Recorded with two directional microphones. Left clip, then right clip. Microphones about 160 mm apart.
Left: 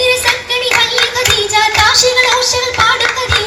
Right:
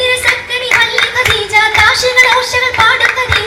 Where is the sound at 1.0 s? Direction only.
25° left (ahead or behind).